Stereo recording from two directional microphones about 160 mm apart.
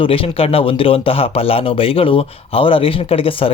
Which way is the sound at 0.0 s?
35° left (ahead or behind).